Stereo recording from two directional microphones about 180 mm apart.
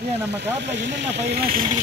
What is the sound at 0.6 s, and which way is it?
Speech, 80° right.